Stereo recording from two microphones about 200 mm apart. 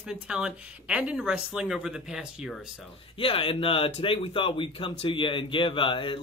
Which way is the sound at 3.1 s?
25° left (ahead or behind).